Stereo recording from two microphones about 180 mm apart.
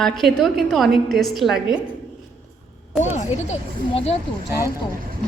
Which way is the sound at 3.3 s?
40° left (ahead or behind).